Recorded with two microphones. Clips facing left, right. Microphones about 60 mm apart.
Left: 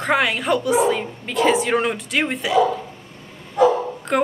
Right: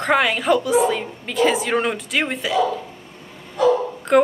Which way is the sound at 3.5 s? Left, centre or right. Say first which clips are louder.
Left 1 dB; centre.